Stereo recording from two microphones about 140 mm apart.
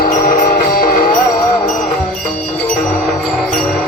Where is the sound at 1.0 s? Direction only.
30° left (ahead or behind).